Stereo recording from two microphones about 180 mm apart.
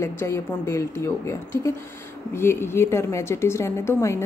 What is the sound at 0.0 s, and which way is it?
A woman's voice, 15° left (ahead or behind).